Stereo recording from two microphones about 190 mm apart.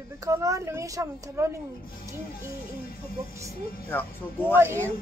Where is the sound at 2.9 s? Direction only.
50° left (ahead or behind).